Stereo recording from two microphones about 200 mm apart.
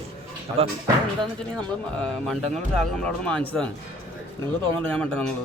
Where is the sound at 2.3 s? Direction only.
Centre (ahead or behind).